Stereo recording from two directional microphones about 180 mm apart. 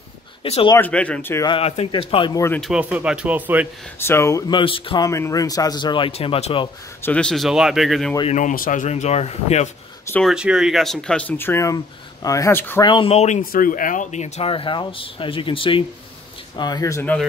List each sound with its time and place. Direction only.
0.4 s speech: 30° left (ahead or behind)
0.7 s speech: 10° left (ahead or behind)
1.5 s speech: 35° left (ahead or behind)
2.4 s speech: 10° left (ahead or behind)
2.7 s speech: 5° right (ahead or behind)
4.0 s speech: 15° left (ahead or behind); by 6.7 s 30° left (ahead or behind)
7.0 s speech: 5° left (ahead or behind)
8.3 s speech: 45° left (ahead or behind)
10.1 s speech: centre (ahead or behind)
12.8 s speech: 30° left (ahead or behind); by 17.2 s 15° left (ahead or behind)